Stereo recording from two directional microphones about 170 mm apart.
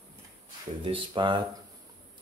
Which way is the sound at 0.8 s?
30° right (ahead or behind).